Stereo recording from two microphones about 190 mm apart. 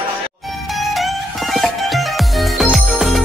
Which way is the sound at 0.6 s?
Centre (ahead or behind).